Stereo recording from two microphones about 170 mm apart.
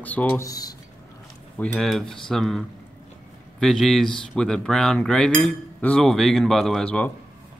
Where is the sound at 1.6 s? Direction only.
Centre (ahead or behind).